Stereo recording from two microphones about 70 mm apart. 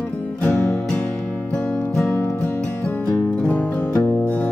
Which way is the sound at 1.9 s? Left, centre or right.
Centre.